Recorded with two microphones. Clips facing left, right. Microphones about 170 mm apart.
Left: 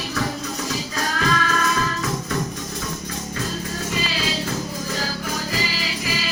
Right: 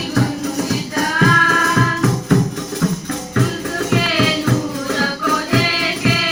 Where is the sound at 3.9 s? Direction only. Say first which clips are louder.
Right 9 dB; 65° right (ahead or behind).